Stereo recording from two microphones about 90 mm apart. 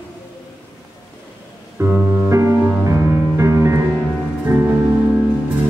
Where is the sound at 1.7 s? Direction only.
25° right (ahead or behind).